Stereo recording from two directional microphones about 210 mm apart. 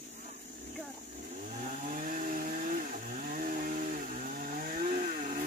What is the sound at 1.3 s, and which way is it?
Chainsaw, 35° right (ahead or behind).